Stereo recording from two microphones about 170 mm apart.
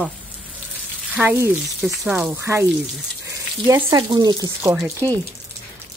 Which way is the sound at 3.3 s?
15° right (ahead or behind).